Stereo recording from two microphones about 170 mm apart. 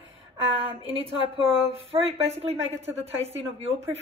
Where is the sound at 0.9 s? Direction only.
35° right (ahead or behind).